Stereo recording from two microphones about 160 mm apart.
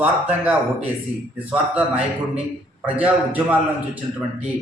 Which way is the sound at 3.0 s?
10° right (ahead or behind).